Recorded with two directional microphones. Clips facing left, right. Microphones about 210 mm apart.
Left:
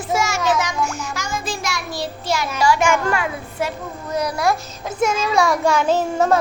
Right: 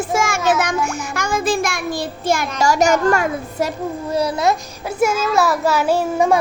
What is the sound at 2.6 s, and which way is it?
A child's voice, 40° right (ahead or behind).